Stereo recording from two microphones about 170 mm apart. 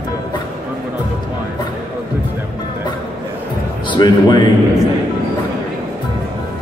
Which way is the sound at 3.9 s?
25° left (ahead or behind).